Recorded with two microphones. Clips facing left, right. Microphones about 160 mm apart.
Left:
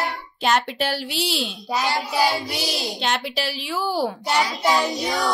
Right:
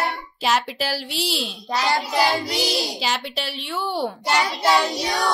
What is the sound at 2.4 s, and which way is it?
Child singing, 85° right.